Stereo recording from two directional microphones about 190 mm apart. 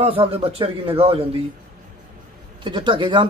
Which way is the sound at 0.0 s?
30° right (ahead or behind).